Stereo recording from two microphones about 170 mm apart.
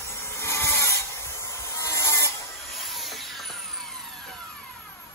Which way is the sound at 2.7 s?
Centre (ahead or behind).